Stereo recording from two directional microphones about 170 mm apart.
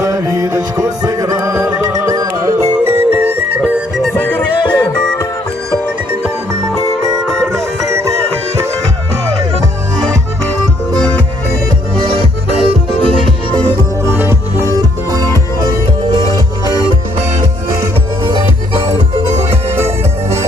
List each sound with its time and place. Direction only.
0.0 s music: 20° right (ahead or behind)
4.6 s music: 20° left (ahead or behind)
7.5 s music: 15° right (ahead or behind)
12.0 s music: 30° right (ahead or behind)
14.0 s music: 15° right (ahead or behind)